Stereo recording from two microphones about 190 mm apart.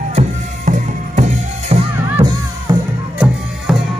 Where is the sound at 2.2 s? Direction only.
25° right (ahead or behind).